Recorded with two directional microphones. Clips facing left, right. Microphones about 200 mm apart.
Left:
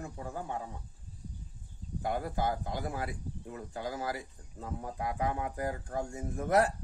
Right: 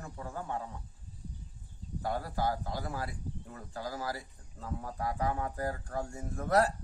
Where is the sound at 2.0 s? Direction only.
20° left (ahead or behind).